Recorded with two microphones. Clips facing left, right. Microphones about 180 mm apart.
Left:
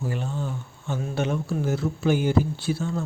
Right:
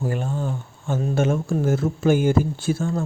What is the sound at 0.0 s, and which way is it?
Speech, 50° right (ahead or behind).